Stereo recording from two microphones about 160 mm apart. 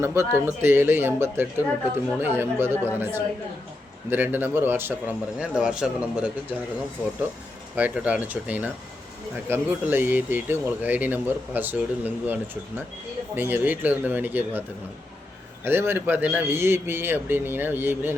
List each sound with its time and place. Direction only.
0.0 s speech: 15° right (ahead or behind)
7.8 s speech: 10° right (ahead or behind)
15.6 s speech: 15° right (ahead or behind)